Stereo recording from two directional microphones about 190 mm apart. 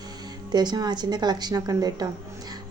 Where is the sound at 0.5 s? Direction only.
20° right (ahead or behind).